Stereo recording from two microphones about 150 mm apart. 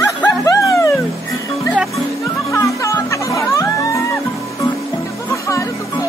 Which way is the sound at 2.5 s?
20° left (ahead or behind).